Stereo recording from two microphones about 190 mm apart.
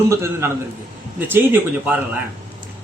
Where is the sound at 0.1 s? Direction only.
15° right (ahead or behind).